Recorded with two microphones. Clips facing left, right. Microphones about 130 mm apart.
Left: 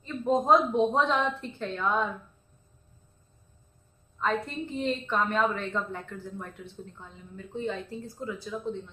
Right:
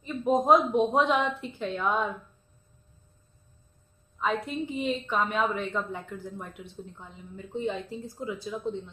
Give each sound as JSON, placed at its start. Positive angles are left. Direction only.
{"t": 0.0, "sound": "speech", "side_deg": -15}
{"t": 4.2, "sound": "speech", "side_deg": -5}